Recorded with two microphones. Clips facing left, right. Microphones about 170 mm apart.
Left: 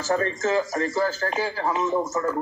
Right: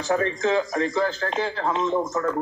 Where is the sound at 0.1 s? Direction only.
Centre (ahead or behind).